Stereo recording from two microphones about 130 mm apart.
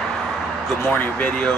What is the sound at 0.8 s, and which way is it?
Speech, 10° left (ahead or behind).